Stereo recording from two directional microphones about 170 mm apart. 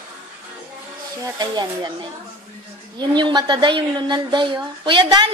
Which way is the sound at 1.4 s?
25° right (ahead or behind).